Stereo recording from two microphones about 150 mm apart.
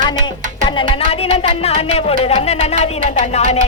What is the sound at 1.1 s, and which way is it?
Music, 40° left (ahead or behind).